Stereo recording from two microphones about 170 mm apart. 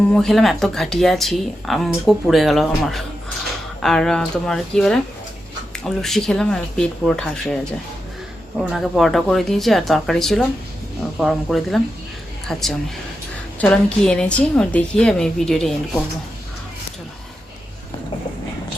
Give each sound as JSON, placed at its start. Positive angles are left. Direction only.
{"t": 0.1, "sound": "speech", "side_deg": 5}